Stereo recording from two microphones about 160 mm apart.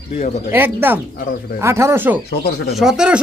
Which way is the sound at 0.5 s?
10° right (ahead or behind).